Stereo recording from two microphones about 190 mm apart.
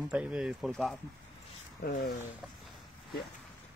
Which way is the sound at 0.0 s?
5° right (ahead or behind).